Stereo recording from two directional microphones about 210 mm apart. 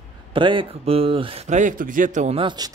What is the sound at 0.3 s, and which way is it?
Speech, 25° right (ahead or behind).